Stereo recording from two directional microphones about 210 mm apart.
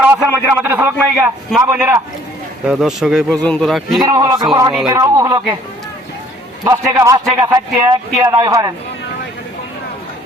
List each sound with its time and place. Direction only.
0.0 s a man's voice: 10° right (ahead or behind)
4.0 s a man's voice: 20° right (ahead or behind)
6.7 s a man's voice: 15° right (ahead or behind)